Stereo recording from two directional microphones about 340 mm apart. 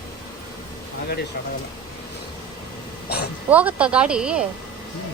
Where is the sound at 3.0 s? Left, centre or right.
Left.